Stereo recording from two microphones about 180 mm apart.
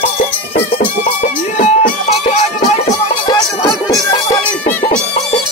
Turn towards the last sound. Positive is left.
turn(degrees=20)  # may be behind; listen again after turning